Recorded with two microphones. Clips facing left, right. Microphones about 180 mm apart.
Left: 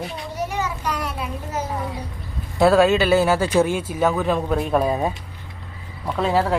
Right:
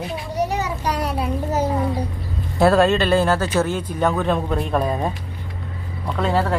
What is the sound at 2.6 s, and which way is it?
Speech, centre (ahead or behind).